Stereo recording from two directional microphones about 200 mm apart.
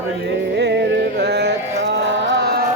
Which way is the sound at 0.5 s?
60° right (ahead or behind).